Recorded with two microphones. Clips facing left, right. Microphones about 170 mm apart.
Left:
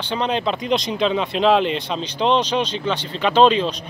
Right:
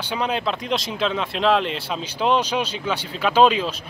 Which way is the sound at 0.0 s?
10° right (ahead or behind).